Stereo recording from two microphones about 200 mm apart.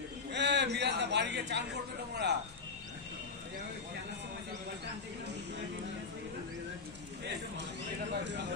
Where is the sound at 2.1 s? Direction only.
55° right (ahead or behind).